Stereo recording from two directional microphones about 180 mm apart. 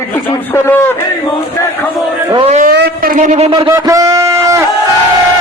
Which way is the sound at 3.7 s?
20° right (ahead or behind).